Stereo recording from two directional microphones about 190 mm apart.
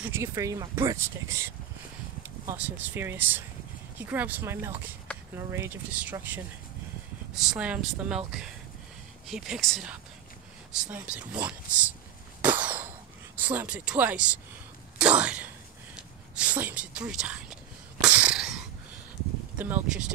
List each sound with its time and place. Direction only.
0.0 s speech: 15° right (ahead or behind)
9.3 s speech: centre (ahead or behind)
12.4 s a sound: 10° right (ahead or behind)
13.4 s speech: 10° right (ahead or behind)
15.0 s a sound: 5° right (ahead or behind)
16.0 s speech: 5° right (ahead or behind)
18.0 s sneeze: 5° right (ahead or behind)
19.6 s speech: 10° right (ahead or behind)